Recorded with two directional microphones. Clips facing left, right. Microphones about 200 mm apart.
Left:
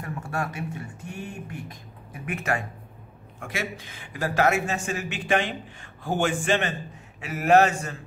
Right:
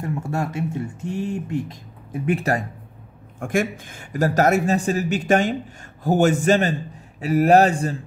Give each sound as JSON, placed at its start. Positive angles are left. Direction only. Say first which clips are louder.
{"t": 0.0, "sound": "speech", "louder": "right 6 dB", "side_deg": -25}
{"t": 3.3, "sound": "a man's voice", "louder": "right 10 dB", "side_deg": -50}